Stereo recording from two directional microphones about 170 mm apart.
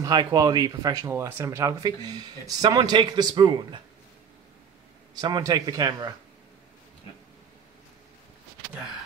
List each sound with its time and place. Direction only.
0.0 s speech: 25° right (ahead or behind)
5.2 s speech: 20° right (ahead or behind)